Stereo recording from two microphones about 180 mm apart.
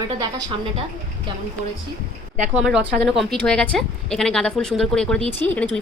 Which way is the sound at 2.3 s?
40° right (ahead or behind).